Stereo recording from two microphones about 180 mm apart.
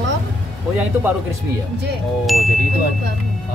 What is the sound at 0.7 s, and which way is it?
Speech, 10° right (ahead or behind).